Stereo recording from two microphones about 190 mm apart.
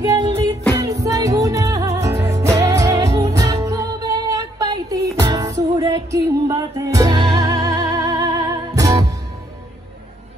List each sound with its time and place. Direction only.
0.8 s music: 15° right (ahead or behind)